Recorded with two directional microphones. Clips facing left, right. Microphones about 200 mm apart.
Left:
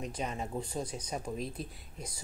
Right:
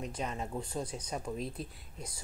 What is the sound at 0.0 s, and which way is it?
Speech, 10° left (ahead or behind).